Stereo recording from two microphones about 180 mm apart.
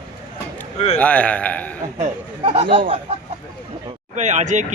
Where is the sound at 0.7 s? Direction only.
35° left (ahead or behind).